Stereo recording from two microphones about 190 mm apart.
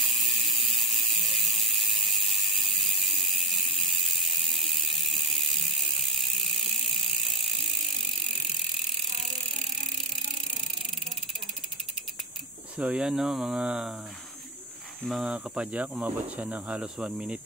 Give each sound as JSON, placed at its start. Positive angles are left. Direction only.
{"t": 0.0, "sound": "ratchet", "side_deg": 0}
{"t": 4.6, "sound": "ratchet", "side_deg": 0}
{"t": 12.7, "sound": "speech", "side_deg": -5}
{"t": 15.0, "sound": "speech", "side_deg": -5}